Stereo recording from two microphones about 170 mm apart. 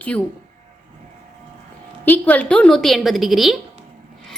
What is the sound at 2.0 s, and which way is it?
A woman's voice, 10° left (ahead or behind).